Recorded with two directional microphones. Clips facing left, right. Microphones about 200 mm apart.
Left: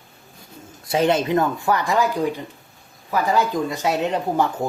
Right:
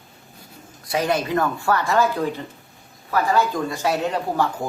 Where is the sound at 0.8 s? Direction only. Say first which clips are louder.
Left 3 dB; 25° left (ahead or behind).